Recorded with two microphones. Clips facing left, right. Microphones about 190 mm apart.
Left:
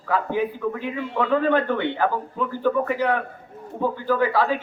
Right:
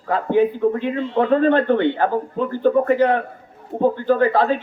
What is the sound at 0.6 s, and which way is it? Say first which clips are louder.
Speech: right 7 dB; 40° right (ahead or behind).